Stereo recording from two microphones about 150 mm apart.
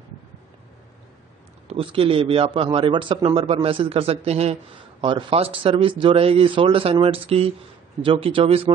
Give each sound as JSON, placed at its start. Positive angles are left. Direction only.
{"t": 1.7, "sound": "a man's voice", "side_deg": -40}